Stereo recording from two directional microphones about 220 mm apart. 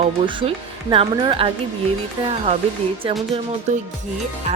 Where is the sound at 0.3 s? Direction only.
20° right (ahead or behind).